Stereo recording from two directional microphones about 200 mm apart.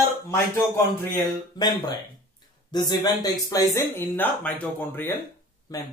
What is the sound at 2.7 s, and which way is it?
Speech, 20° left (ahead or behind).